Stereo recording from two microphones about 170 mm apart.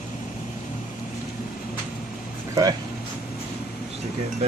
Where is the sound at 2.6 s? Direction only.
20° right (ahead or behind).